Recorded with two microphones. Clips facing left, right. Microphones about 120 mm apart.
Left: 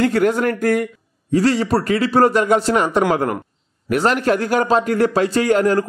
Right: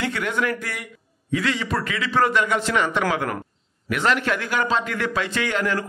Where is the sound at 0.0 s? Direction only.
40° left (ahead or behind).